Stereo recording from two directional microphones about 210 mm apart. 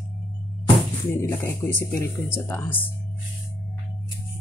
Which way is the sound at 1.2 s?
10° left (ahead or behind).